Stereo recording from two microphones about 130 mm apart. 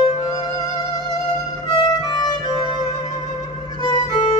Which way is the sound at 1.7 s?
35° left (ahead or behind).